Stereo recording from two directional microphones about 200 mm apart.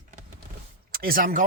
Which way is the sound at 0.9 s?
45° right (ahead or behind).